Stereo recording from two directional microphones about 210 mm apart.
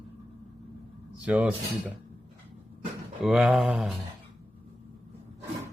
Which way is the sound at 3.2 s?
5° right (ahead or behind).